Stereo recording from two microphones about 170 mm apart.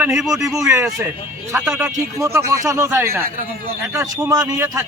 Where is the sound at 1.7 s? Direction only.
15° right (ahead or behind).